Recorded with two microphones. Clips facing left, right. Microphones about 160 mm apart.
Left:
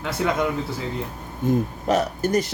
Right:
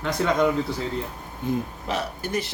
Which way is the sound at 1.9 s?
45° left (ahead or behind).